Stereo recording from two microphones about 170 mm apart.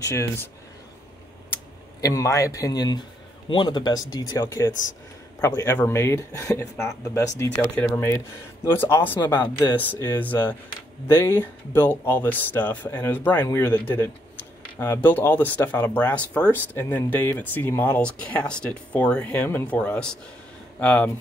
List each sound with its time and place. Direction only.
2.0 s speech: 20° left (ahead or behind)